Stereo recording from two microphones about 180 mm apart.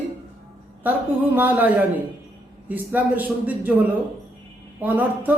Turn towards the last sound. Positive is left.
turn(degrees=-10)  # may be behind; listen again after turning